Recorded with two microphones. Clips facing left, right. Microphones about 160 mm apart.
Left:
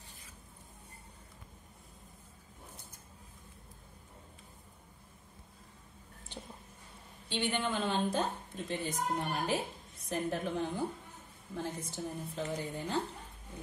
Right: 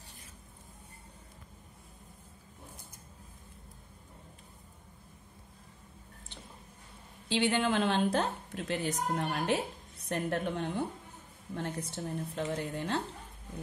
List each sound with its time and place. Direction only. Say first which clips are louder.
7.2 s a woman's voice: right 5 dB; 90° right; by 13.0 s 70° right (ahead or behind)